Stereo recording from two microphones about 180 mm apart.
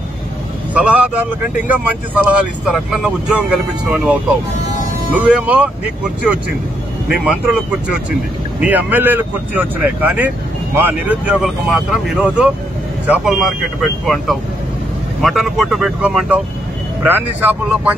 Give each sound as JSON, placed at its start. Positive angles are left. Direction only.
{"t": 0.7, "sound": "speech", "side_deg": -5}
{"t": 8.5, "sound": "speech", "side_deg": -10}